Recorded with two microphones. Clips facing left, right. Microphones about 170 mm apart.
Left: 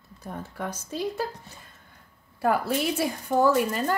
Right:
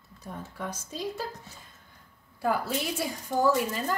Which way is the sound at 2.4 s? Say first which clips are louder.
Left 4 dB; 60° left (ahead or behind).